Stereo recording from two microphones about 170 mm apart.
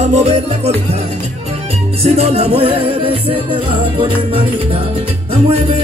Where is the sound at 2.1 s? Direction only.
35° right (ahead or behind).